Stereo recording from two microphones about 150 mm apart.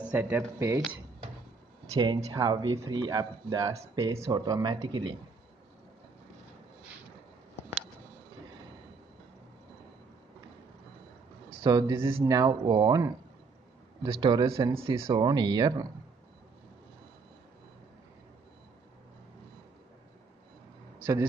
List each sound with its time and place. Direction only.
0.0 s speech: 10° right (ahead or behind)
2.0 s a man's voice: 25° right (ahead or behind)
11.6 s a man's voice: 25° right (ahead or behind)
15.1 s speech: 30° right (ahead or behind)
21.0 s a sound: 15° right (ahead or behind)